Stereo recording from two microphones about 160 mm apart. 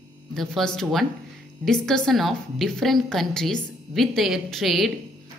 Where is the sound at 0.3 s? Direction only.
Centre (ahead or behind).